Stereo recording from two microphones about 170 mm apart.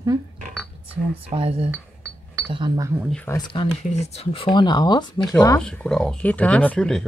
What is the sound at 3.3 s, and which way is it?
Speech, 30° left (ahead or behind).